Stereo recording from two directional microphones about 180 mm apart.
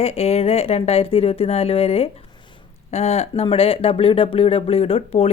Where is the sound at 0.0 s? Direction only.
35° left (ahead or behind).